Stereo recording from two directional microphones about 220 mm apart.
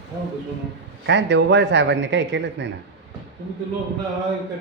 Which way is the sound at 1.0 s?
55° right (ahead or behind).